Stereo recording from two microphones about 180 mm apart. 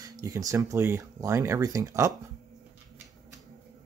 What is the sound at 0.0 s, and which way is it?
Speech, 20° right (ahead or behind).